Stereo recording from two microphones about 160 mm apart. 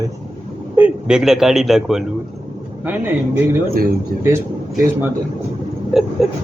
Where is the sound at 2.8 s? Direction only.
10° right (ahead or behind).